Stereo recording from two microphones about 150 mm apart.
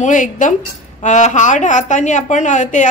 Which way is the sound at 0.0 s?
55° left (ahead or behind).